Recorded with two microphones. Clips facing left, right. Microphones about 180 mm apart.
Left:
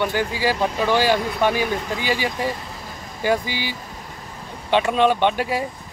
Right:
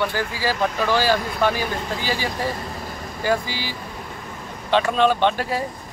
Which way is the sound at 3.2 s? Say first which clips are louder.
Left 1 dB; 15° left (ahead or behind).